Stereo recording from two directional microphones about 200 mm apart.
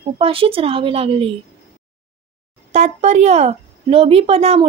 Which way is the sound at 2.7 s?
35° right (ahead or behind).